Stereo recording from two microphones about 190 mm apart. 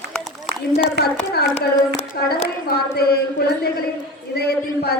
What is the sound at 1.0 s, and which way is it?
Speech, 60° right (ahead or behind).